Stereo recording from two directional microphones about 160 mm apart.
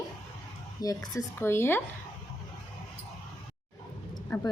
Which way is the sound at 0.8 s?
20° left (ahead or behind).